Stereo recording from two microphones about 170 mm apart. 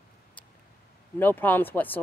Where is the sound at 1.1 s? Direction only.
10° left (ahead or behind).